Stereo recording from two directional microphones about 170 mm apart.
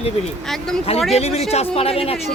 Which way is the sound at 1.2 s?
40° left (ahead or behind).